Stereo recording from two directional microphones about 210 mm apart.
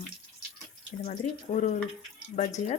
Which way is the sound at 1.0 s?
35° left (ahead or behind).